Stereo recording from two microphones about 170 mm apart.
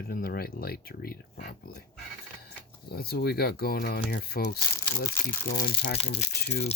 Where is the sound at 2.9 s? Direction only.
65° left (ahead or behind).